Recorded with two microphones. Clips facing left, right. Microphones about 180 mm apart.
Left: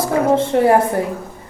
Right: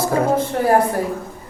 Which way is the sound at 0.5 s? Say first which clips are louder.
Left 6 dB; 20° left (ahead or behind).